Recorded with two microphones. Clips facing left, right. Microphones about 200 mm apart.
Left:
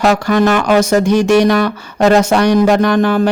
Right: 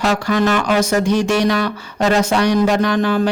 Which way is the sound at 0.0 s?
50° left (ahead or behind).